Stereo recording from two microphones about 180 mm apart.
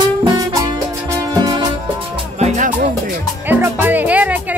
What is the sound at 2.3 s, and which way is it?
Music, 40° right (ahead or behind).